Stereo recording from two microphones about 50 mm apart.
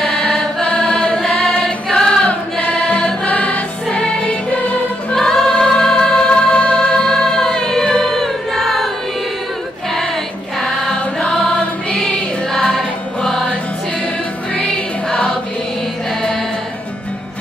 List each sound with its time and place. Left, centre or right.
0.0 s choir: centre
2.6 s music: left
5.1 s choir: centre
10.6 s music: centre